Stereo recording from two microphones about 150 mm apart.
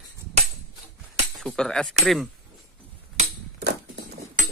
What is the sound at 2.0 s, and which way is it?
Cutlery, centre (ahead or behind).